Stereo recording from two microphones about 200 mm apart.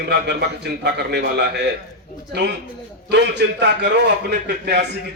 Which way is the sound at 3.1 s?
55° right (ahead or behind).